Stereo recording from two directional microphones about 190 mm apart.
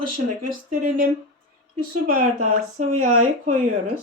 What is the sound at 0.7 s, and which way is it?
A woman's voice, 45° right (ahead or behind).